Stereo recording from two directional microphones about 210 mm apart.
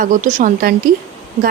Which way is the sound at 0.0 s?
40° right (ahead or behind).